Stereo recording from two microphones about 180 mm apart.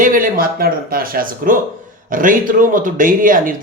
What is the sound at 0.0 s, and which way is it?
Speech, 50° right (ahead or behind).